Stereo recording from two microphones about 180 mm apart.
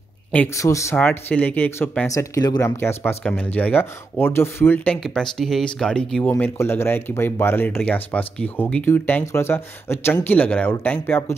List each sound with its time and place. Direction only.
0.3 s speech: 10° left (ahead or behind)